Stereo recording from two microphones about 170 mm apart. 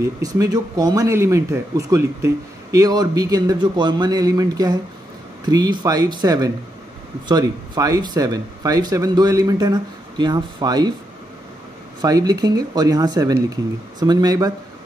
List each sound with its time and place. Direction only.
0.4 s speech: 20° right (ahead or behind)
12.0 s speech: 20° right (ahead or behind)